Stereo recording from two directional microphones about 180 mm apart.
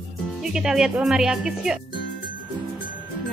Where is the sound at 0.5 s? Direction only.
5° right (ahead or behind).